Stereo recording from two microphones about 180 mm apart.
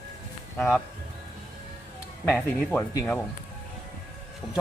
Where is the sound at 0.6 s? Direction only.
5° right (ahead or behind).